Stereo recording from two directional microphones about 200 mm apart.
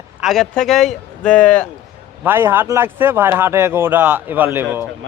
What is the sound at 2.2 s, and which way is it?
A man's voice, 10° right (ahead or behind).